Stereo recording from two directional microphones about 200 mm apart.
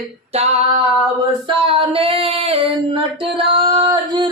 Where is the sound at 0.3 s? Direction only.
30° right (ahead or behind).